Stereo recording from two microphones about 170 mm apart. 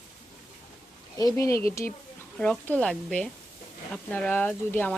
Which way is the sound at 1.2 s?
15° left (ahead or behind).